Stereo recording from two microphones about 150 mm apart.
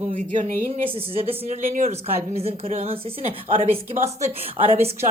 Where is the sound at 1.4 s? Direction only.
55° right (ahead or behind).